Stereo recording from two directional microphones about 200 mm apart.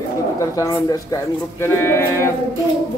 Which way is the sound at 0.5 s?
15° left (ahead or behind).